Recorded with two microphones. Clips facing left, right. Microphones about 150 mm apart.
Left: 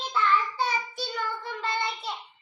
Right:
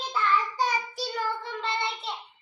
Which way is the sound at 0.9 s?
35° right (ahead or behind).